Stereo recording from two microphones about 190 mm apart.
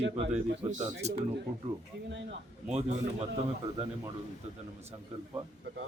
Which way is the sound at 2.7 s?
35° right (ahead or behind).